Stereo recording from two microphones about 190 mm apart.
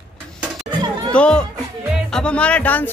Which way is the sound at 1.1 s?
5° left (ahead or behind).